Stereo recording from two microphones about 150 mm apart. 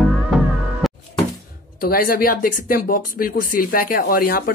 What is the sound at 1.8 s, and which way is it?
Speech, 70° left (ahead or behind).